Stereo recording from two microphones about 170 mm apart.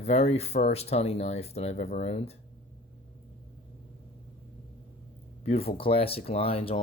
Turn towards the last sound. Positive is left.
turn(degrees=35)  # may be behind; listen again after turning